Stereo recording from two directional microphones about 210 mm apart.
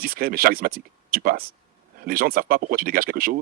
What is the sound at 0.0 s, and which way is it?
Speech, 45° right (ahead or behind).